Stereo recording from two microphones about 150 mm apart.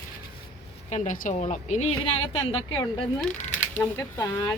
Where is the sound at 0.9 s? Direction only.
55° left (ahead or behind).